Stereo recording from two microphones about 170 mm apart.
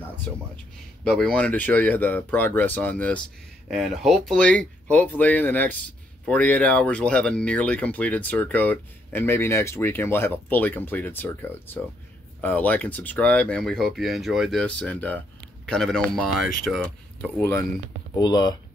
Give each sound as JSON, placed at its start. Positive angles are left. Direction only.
{"t": 0.3, "sound": "speech", "side_deg": 10}
{"t": 18.1, "sound": "speech", "side_deg": 25}